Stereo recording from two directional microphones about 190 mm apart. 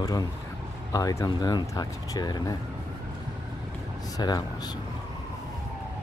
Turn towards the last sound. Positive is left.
turn(degrees=20)  # may be behind; listen again after turning